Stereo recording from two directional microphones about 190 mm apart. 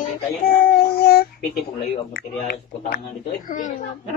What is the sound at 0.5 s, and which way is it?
Child singing, 50° left (ahead or behind).